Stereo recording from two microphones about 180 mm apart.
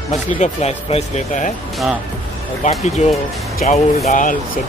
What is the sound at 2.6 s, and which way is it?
Speech, 45° left (ahead or behind).